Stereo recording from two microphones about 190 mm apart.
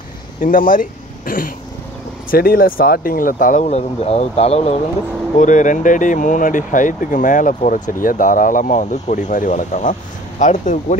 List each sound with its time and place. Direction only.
0.4 s speech: 45° left (ahead or behind)